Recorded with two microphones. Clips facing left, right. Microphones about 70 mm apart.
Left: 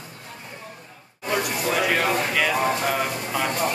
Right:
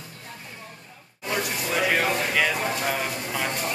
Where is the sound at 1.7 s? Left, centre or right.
Centre.